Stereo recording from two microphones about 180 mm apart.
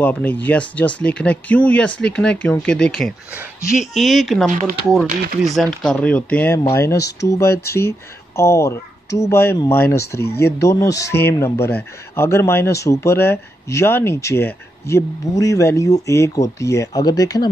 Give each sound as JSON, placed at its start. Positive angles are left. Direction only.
{"t": 0.0, "sound": "speech", "side_deg": 10}
{"t": 4.5, "sound": "speech", "side_deg": -45}
{"t": 5.4, "sound": "speech", "side_deg": 0}